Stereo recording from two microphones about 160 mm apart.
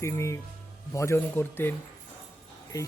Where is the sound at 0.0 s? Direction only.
20° left (ahead or behind).